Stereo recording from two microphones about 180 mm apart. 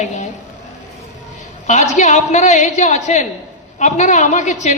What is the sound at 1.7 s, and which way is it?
A man's voice, 40° left (ahead or behind).